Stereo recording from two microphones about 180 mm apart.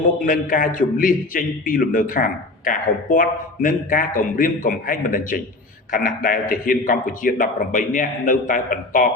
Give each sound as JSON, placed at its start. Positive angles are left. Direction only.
{"t": 0.3, "sound": "a man's voice", "side_deg": 50}